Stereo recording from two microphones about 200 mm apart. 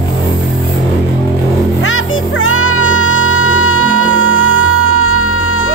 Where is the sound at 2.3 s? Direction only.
85° left.